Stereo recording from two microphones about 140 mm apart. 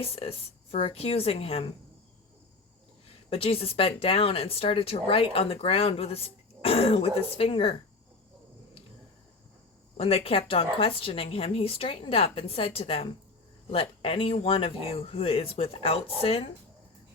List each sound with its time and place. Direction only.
0.0 s a woman's voice: 40° left (ahead or behind)
3.2 s speech: 40° left (ahead or behind)
10.0 s speech: 45° left (ahead or behind)